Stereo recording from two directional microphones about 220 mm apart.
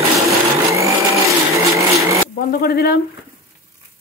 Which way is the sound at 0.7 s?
15° right (ahead or behind).